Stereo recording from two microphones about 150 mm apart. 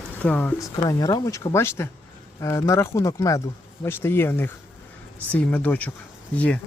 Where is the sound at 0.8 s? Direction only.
25° left (ahead or behind).